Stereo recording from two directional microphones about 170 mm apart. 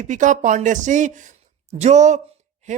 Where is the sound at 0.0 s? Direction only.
45° right (ahead or behind).